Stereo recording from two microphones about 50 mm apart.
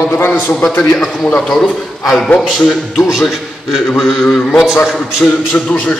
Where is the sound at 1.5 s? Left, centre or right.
Centre.